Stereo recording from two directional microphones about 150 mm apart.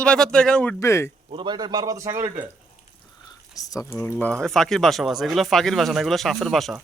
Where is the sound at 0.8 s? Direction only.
20° left (ahead or behind).